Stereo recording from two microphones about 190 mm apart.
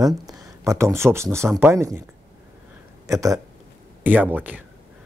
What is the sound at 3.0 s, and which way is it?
Speech, 15° right (ahead or behind).